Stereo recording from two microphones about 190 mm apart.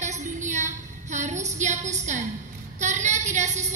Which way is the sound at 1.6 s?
40° right (ahead or behind).